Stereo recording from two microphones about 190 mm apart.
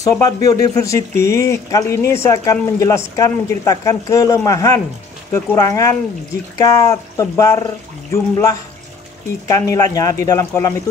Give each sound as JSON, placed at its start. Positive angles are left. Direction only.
{"t": 0.0, "sound": "speech", "side_deg": 20}